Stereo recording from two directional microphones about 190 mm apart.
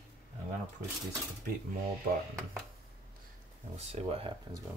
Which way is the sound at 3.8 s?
35° right (ahead or behind).